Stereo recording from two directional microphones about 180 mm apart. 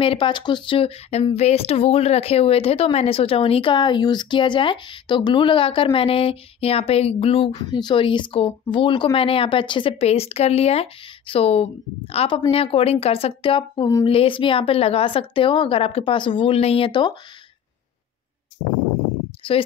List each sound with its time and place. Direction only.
0.0 s a woman's voice: 30° left (ahead or behind)
19.4 s a woman's voice: 30° left (ahead or behind)